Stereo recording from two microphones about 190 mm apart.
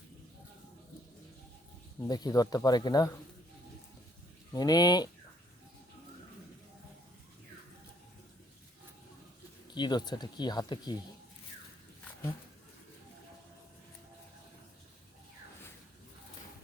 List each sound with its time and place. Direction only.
2.0 s speech: 20° left (ahead or behind)
4.5 s speech: 20° left (ahead or behind)
9.7 s speech: 20° left (ahead or behind)